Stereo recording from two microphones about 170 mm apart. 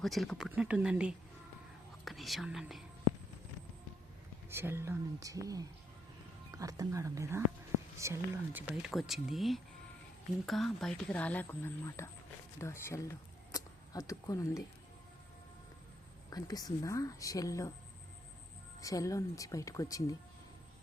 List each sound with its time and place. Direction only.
0.0 s speech: centre (ahead or behind)
4.4 s speech: 15° right (ahead or behind)
8.7 s speech: centre (ahead or behind); by 13.0 s 15° left (ahead or behind)
14.1 s a woman's voice: 20° left (ahead or behind)
16.3 s a woman's voice: 20° left (ahead or behind)
18.8 s a woman's voice: 20° left (ahead or behind)